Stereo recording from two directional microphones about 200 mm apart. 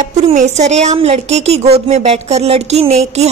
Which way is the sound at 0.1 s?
35° right (ahead or behind).